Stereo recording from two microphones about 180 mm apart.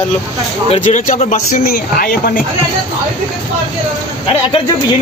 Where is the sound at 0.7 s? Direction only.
40° left (ahead or behind).